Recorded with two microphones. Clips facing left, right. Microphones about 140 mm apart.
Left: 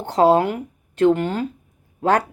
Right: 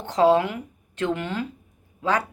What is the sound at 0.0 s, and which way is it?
Speech, 40° left (ahead or behind).